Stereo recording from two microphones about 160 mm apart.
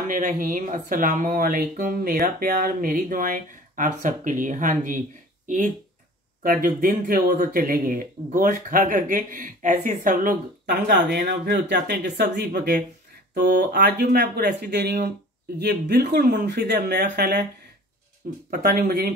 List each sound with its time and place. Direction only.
0.1 s speech: 55° right (ahead or behind)
6.4 s speech: 65° right (ahead or behind); by 17.5 s 90° right
18.5 s speech: 65° right (ahead or behind)